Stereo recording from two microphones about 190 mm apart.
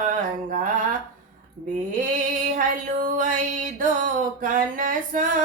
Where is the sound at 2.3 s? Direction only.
45° right (ahead or behind).